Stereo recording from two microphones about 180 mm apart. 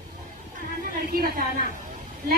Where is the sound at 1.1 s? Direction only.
55° right (ahead or behind).